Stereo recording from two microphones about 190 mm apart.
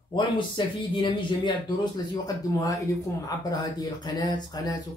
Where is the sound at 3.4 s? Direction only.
20° left (ahead or behind).